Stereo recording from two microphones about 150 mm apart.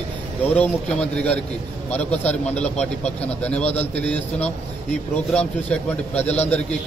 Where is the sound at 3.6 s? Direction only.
45° left (ahead or behind).